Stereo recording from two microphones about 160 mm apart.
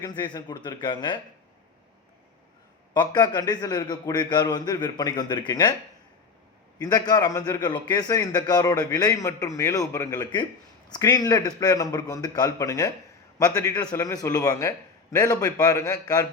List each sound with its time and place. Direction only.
0.0 s a man's voice: 30° left (ahead or behind)
2.9 s a man's voice: 25° left (ahead or behind)
6.7 s a man's voice: 25° left (ahead or behind)